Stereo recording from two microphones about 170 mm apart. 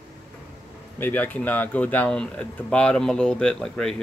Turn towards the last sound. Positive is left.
turn(degrees=5)  # may be behind; listen again after turning